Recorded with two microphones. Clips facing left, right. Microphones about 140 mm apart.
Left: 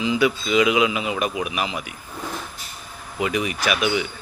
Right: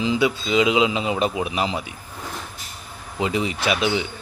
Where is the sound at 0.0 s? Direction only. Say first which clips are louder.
Even; 25° right (ahead or behind).